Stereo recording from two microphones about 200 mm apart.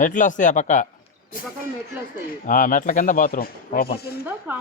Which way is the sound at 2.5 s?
40° left (ahead or behind).